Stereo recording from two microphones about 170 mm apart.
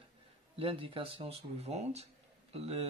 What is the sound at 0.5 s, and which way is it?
Speech, 35° right (ahead or behind).